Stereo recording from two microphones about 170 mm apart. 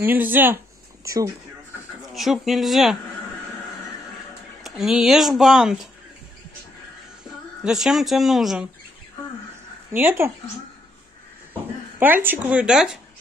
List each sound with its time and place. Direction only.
0.0 s speech: 10° right (ahead or behind)
2.1 s speech: centre (ahead or behind)
4.6 s speech: centre (ahead or behind)
7.6 s speech: centre (ahead or behind)
9.9 s speech: 15° right (ahead or behind)
12.0 s speech: 10° right (ahead or behind)